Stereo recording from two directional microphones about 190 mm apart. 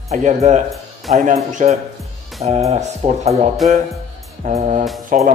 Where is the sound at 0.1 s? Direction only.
35° right (ahead or behind).